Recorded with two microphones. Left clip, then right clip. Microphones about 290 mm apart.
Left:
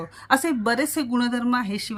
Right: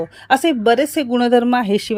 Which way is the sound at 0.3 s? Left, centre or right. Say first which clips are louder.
Right 7 dB; centre.